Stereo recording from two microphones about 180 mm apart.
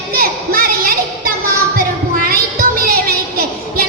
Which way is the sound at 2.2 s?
55° right (ahead or behind).